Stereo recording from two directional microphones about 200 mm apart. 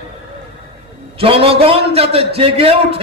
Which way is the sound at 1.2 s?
30° right (ahead or behind).